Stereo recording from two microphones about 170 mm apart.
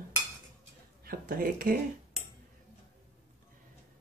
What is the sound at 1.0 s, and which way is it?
Speech, 60° right (ahead or behind).